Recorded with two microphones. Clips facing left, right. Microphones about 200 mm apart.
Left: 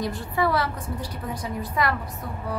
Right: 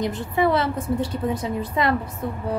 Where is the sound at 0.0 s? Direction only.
20° right (ahead or behind).